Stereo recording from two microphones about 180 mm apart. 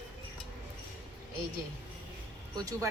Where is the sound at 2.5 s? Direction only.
20° right (ahead or behind).